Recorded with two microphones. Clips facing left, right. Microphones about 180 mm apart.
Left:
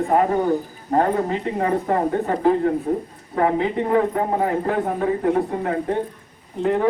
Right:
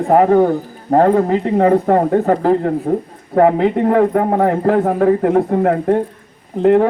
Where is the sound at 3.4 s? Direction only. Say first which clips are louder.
Right 8 dB; 50° right (ahead or behind).